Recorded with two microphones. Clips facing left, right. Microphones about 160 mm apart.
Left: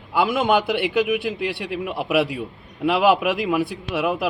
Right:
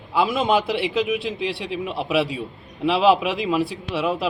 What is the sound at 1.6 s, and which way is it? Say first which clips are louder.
A man's voice: even; 55° left (ahead or behind).